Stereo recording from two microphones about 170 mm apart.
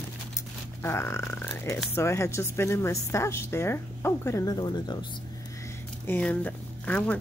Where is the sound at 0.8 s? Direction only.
15° left (ahead or behind).